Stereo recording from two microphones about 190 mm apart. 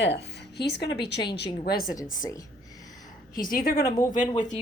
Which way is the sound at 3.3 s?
45° left (ahead or behind).